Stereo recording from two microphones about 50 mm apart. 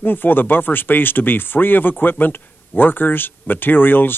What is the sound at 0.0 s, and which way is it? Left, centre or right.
Speech, left.